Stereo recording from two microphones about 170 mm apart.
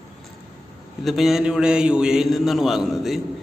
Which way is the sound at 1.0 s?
Centre (ahead or behind).